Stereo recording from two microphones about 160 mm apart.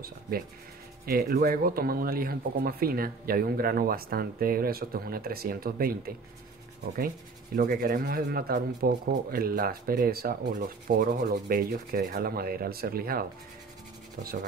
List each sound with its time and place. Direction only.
1.0 s speech: 70° right (ahead or behind)
7.5 s speech: 70° right (ahead or behind)